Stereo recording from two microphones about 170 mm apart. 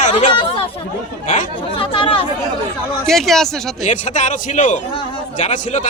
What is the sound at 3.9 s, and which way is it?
Speech, 45° left (ahead or behind).